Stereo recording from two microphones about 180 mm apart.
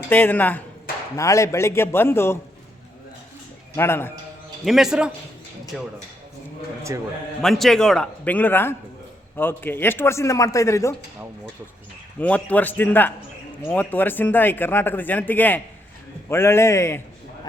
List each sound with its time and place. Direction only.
0.1 s a man's voice: 10° left (ahead or behind)
3.8 s a man's voice: 15° left (ahead or behind)
4.6 s a man's voice: centre (ahead or behind)
6.9 s a man's voice: 20° right (ahead or behind)
7.4 s a man's voice: centre (ahead or behind); by 10.9 s 15° left (ahead or behind)
12.2 s a man's voice: 10° left (ahead or behind)